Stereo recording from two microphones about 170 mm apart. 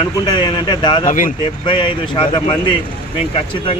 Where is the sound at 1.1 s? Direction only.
50° left (ahead or behind).